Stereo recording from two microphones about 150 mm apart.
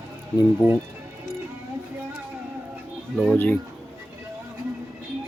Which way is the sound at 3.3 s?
10° left (ahead or behind).